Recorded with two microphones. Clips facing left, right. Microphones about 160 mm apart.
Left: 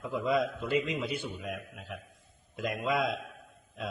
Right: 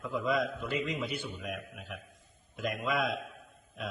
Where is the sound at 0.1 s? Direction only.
30° left (ahead or behind).